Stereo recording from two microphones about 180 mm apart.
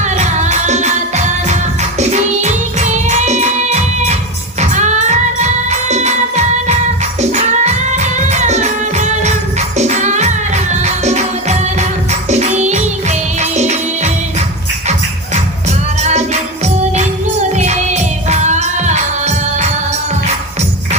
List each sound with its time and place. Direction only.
0.0 s music: 40° right (ahead or behind)
16.6 s music: 40° right (ahead or behind)